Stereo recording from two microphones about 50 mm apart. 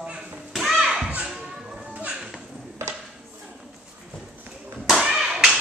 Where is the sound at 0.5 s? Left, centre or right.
Centre.